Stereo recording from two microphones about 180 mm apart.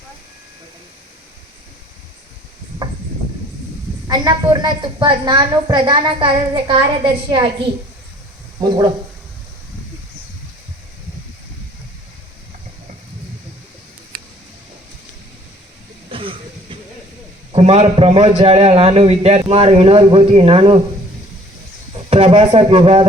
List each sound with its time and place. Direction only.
4.0 s a woman's voice: 20° right (ahead or behind)
16.0 s a sound: 30° right (ahead or behind)
17.5 s a man's voice: 35° right (ahead or behind)
22.1 s a man's voice: 35° right (ahead or behind)